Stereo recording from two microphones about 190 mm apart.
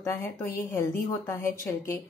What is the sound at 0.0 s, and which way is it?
A woman's voice, 15° left (ahead or behind).